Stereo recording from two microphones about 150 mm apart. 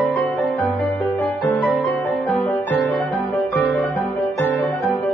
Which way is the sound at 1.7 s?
Centre (ahead or behind).